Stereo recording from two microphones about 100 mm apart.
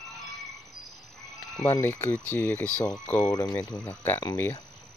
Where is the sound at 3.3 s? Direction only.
35° left (ahead or behind).